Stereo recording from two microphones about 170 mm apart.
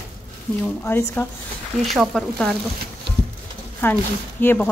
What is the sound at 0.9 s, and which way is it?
Speech, 15° left (ahead or behind).